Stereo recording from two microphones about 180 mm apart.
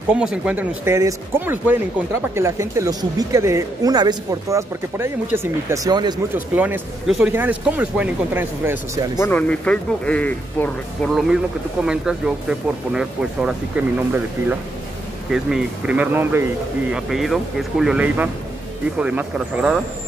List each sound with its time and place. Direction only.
0.1 s speech: 5° right (ahead or behind); by 6.1 s 20° right (ahead or behind)
6.3 s speech: 10° right (ahead or behind)
9.2 s speech: 10° left (ahead or behind)
11.8 s speech: 5° right (ahead or behind)
16.9 s speech: centre (ahead or behind)